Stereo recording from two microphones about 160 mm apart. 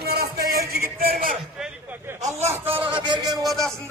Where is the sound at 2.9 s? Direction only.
30° right (ahead or behind).